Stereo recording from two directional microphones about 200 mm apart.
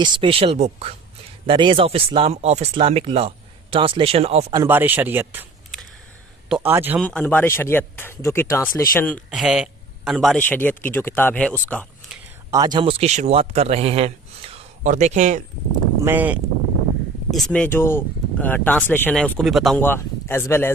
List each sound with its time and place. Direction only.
0.0 s speech: 25° right (ahead or behind)
4.5 s speech: 10° right (ahead or behind)
6.5 s speech: 10° right (ahead or behind)
7.0 s speech: 5° left (ahead or behind)
12.5 s a man's voice: 20° right (ahead or behind); by 15.4 s 35° right (ahead or behind)
16.0 s speech: 10° right (ahead or behind)
17.3 s speech: 5° left (ahead or behind)
19.8 s speech: 10° left (ahead or behind)